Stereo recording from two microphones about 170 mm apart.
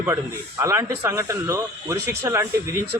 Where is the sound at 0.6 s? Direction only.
15° right (ahead or behind).